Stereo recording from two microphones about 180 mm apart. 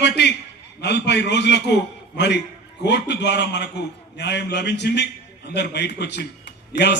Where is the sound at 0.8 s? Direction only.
70° left (ahead or behind).